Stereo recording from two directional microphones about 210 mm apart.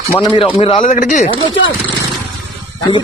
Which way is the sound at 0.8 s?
35° left (ahead or behind).